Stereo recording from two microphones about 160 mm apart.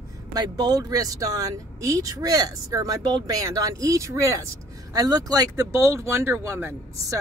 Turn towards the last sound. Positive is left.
turn(degrees=-15)  # may be behind; listen again after turning